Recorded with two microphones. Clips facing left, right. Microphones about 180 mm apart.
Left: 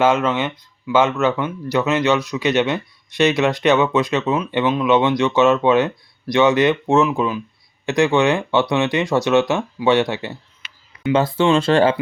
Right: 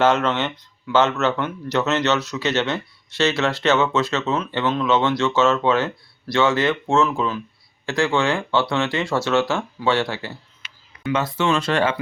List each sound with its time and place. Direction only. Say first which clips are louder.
0.0 s speech: left 2 dB; 10° left (ahead or behind)
11.1 s speech: left 5 dB; 30° left (ahead or behind)